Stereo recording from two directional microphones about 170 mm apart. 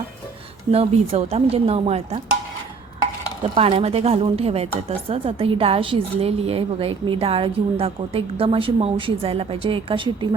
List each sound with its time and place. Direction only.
0.7 s speech: 35° right (ahead or behind)
3.4 s speech: 35° right (ahead or behind)